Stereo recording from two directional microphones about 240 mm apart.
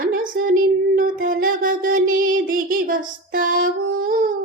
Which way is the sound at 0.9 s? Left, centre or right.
Right.